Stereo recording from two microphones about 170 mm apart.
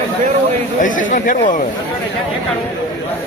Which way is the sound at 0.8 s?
50° left (ahead or behind).